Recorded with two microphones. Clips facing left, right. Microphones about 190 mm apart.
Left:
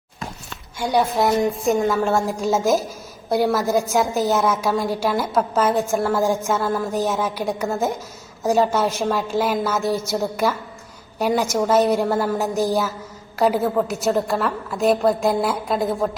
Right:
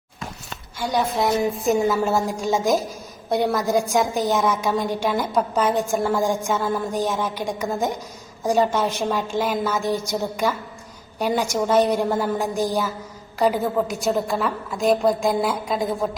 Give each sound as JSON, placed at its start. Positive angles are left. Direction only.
{"t": 0.8, "sound": "a woman's voice", "side_deg": 10}
{"t": 1.4, "sound": "a woman's voice", "side_deg": 0}
{"t": 6.9, "sound": "a woman's voice", "side_deg": 10}
{"t": 8.4, "sound": "a woman's voice", "side_deg": 5}